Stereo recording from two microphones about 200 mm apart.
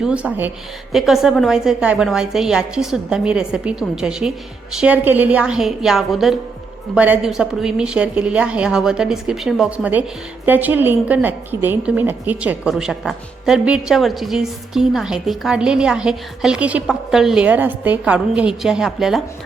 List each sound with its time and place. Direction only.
0.0 s a woman's voice: 5° right (ahead or behind)